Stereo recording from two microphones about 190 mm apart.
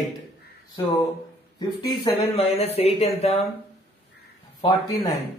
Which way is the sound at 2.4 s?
30° left (ahead or behind).